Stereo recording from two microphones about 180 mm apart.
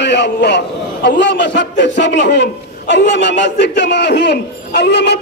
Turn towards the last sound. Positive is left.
turn(degrees=70)  # may be behind; listen again after turning